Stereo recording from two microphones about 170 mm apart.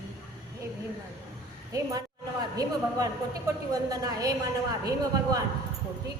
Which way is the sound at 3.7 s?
20° right (ahead or behind).